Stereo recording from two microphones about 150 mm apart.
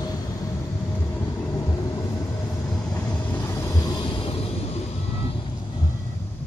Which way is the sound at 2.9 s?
10° left (ahead or behind).